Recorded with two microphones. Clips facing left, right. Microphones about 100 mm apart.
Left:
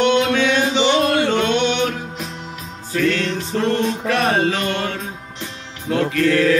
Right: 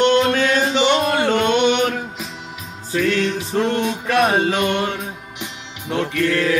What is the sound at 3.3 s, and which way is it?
Music, 5° right (ahead or behind).